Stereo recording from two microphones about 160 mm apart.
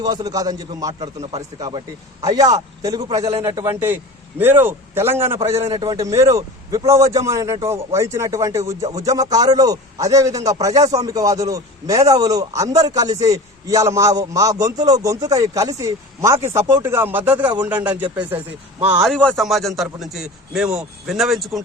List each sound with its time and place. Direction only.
0.0 s a man's voice: 25° right (ahead or behind)
19.0 s a man's voice: 5° left (ahead or behind)